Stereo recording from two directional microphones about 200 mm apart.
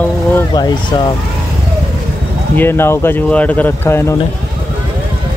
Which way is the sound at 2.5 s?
10° left (ahead or behind).